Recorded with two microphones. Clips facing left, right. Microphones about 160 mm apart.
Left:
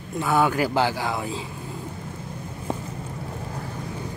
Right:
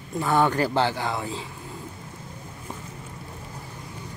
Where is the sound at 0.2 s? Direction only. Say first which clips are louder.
Even; 5° left (ahead or behind).